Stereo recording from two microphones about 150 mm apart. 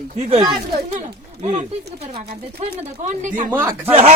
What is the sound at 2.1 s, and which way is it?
Speech, 45° right (ahead or behind).